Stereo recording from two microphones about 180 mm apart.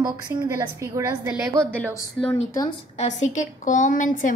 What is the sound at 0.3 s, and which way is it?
A woman's voice, 15° right (ahead or behind).